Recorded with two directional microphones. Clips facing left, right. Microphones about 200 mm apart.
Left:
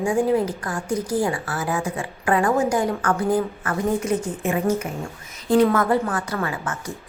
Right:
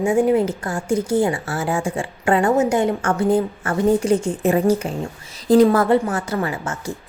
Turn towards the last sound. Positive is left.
turn(degrees=-25)  # may be behind; listen again after turning